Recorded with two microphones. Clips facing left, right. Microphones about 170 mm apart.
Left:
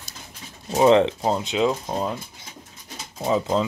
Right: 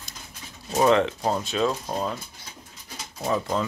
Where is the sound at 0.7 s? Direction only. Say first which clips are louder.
Left 4 dB; 25° left (ahead or behind).